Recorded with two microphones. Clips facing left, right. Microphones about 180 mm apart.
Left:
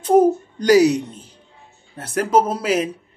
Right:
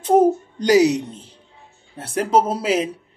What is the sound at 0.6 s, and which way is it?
Speech, 20° right (ahead or behind).